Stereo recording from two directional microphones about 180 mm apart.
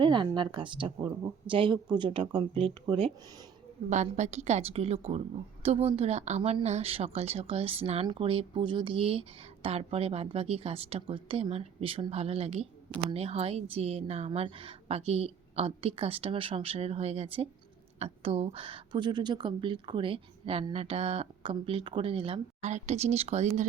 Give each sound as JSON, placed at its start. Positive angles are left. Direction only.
{"t": 0.0, "sound": "a woman's voice", "side_deg": -25}
{"t": 3.8, "sound": "speech", "side_deg": -40}